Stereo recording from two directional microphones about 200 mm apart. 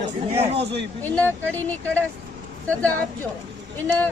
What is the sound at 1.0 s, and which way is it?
Speech, 10° left (ahead or behind).